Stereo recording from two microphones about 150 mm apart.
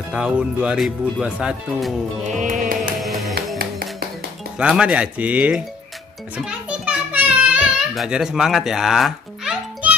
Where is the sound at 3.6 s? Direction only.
90° right.